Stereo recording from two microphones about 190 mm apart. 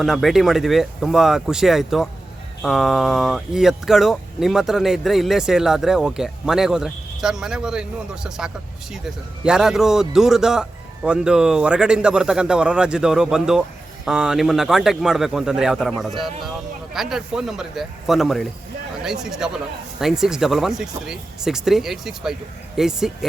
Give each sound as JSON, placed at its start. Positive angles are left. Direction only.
{"t": 0.0, "sound": "speech", "side_deg": 0}